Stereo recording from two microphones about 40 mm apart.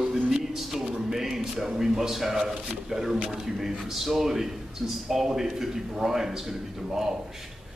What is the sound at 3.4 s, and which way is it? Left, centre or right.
A man's voice, centre.